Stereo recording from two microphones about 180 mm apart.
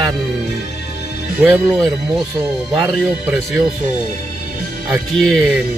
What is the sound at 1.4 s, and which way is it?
Speech, centre (ahead or behind).